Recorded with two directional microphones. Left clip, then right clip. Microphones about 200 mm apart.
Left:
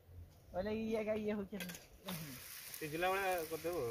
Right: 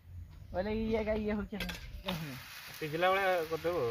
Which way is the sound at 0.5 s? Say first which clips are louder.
Right 5 dB; 50° left (ahead or behind).